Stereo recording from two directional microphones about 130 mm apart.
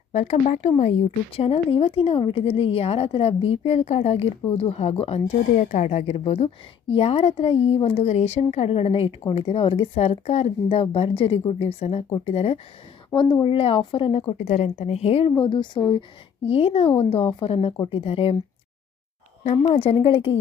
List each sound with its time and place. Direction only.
0.1 s a woman's voice: 55° left (ahead or behind)
13.1 s a woman's voice: 35° left (ahead or behind)
14.3 s a woman's voice: 75° left (ahead or behind); by 18.3 s 50° left (ahead or behind)
19.5 s a woman's voice: 55° left (ahead or behind)